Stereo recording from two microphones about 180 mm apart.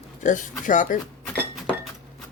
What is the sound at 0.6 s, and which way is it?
Speech, 45° left (ahead or behind).